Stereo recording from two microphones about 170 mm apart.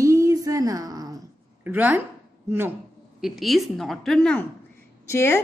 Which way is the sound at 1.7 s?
10° right (ahead or behind).